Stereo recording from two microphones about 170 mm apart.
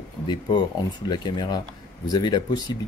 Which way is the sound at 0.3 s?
25° left (ahead or behind).